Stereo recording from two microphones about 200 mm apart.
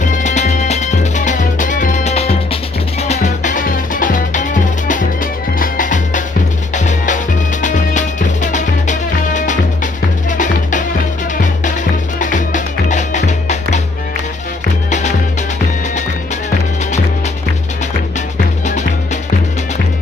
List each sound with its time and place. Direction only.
0.0 s music: 40° left (ahead or behind)
12.2 s music: 40° left (ahead or behind)
14.9 s music: 35° left (ahead or behind)